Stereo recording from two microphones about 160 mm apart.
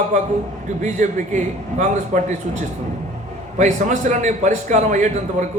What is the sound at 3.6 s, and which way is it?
A man's voice, 50° right (ahead or behind).